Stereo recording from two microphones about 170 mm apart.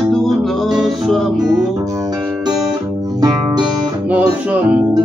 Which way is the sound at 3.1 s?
25° right (ahead or behind).